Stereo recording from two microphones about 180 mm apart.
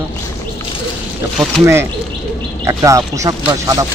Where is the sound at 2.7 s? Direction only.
15° right (ahead or behind).